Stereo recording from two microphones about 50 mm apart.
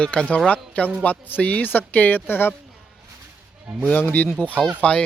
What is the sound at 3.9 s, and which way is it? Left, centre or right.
Speech, left.